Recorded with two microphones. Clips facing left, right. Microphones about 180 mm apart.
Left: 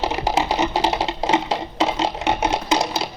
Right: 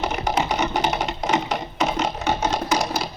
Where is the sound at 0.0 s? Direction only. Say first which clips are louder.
Left 2 dB; 30° left (ahead or behind).